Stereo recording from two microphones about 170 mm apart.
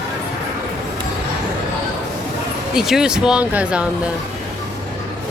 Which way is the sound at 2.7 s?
5° right (ahead or behind).